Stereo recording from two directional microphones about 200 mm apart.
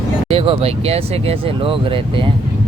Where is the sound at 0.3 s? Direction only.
30° right (ahead or behind).